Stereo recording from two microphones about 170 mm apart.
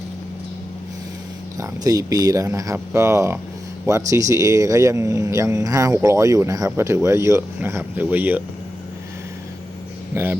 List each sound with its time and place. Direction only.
1.5 s speech: 20° right (ahead or behind)
10.1 s speech: 15° right (ahead or behind)